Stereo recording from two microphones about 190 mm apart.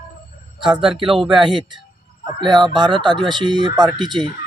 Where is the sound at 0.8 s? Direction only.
25° right (ahead or behind).